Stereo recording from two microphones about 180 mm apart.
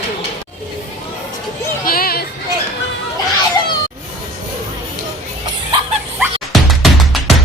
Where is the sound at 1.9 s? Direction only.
55° left (ahead or behind).